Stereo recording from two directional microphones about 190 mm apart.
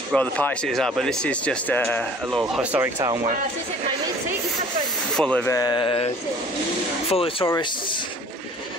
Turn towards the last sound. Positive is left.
turn(degrees=20)  # may be behind; listen again after turning